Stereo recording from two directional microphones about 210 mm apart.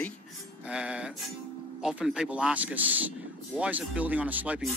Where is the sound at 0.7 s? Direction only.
5° right (ahead or behind).